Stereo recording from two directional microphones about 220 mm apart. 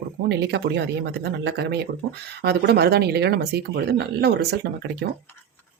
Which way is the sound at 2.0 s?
60° right (ahead or behind).